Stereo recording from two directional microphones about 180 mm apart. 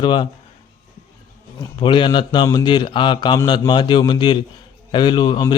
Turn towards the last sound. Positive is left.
turn(degrees=25)  # may be behind; listen again after turning